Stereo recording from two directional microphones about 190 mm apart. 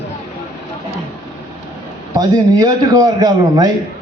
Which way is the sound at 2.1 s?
20° right (ahead or behind).